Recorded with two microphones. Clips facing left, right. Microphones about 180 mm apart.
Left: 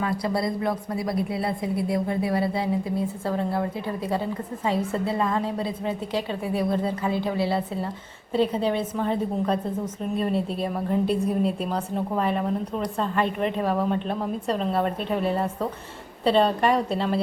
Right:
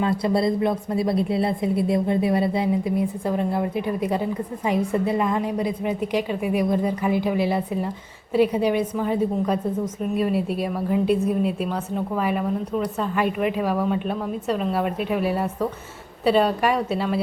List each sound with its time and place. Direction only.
0.0 s a woman's voice: 25° right (ahead or behind); by 17.2 s 5° right (ahead or behind)